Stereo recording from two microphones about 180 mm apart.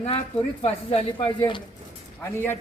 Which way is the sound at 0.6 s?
30° left (ahead or behind).